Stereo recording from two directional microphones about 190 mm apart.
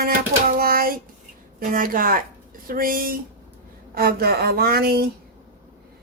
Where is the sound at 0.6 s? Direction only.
50° right (ahead or behind).